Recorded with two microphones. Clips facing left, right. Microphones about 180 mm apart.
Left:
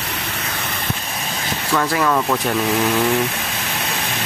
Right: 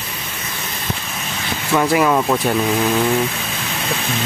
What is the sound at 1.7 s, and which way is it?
Speech, 15° right (ahead or behind).